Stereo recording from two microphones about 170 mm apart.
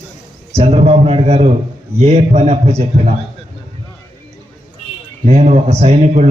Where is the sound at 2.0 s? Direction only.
40° right (ahead or behind).